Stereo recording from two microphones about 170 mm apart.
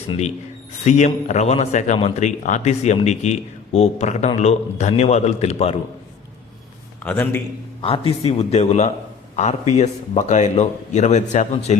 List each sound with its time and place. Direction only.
0.9 s speech: 45° left (ahead or behind)
7.0 s a man's voice: 10° left (ahead or behind)
7.8 s a man's voice: 35° left (ahead or behind)